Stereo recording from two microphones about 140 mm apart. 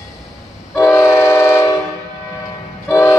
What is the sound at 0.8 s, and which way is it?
Train, 20° left (ahead or behind).